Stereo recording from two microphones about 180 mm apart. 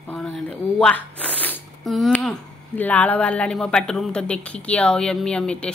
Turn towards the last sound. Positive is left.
turn(degrees=5)  # may be behind; listen again after turning